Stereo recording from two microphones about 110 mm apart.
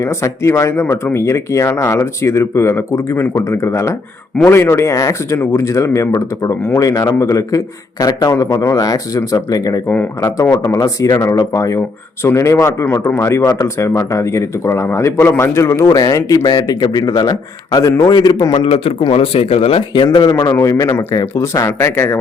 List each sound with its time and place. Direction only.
0.0 s a man's voice: 25° left (ahead or behind)
9.9 s speech: 15° left (ahead or behind)
10.7 s speech: 30° left (ahead or behind)
18.5 s speech: 60° left (ahead or behind)
20.3 s speech: 35° left (ahead or behind)